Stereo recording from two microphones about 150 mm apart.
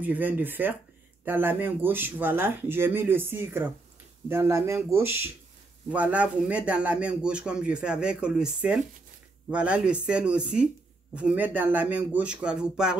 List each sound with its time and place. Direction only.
0.0 s a man's voice: 10° right (ahead or behind)